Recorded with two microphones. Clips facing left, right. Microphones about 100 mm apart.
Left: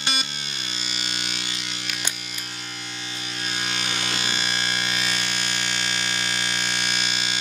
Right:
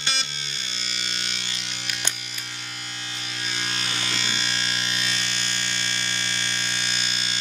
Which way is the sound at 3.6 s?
10° left (ahead or behind).